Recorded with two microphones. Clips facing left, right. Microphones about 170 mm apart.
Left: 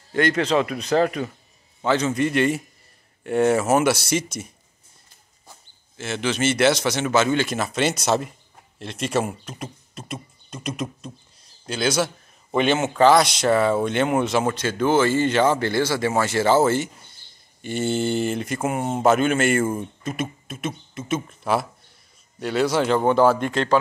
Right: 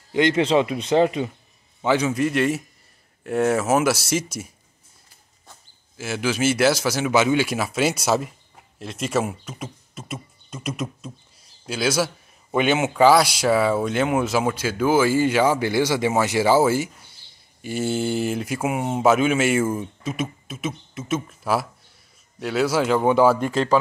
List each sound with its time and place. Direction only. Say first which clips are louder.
0.1 s a man's voice: right 2 dB; 20° right (ahead or behind); by 4.5 s 5° right (ahead or behind)
5.9 s a man's voice: right 1 dB; 5° right (ahead or behind)